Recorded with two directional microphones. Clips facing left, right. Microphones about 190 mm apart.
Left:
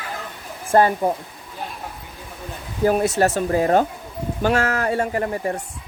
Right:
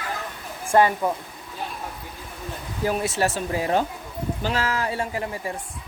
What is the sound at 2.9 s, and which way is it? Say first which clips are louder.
Speech: left 6 dB; 45° left (ahead or behind).